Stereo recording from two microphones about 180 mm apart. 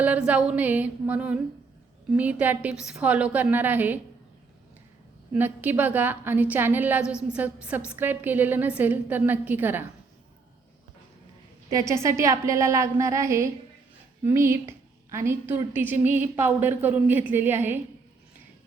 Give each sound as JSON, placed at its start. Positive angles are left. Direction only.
{"t": 0.0, "sound": "a woman's voice", "side_deg": -10}
{"t": 5.3, "sound": "a woman's voice", "side_deg": -10}
{"t": 11.7, "sound": "a woman's voice", "side_deg": -20}